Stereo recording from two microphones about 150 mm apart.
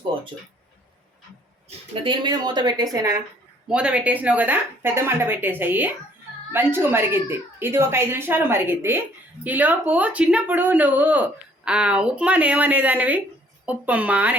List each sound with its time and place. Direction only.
2.0 s speech: 30° right (ahead or behind)
3.7 s speech: 5° right (ahead or behind)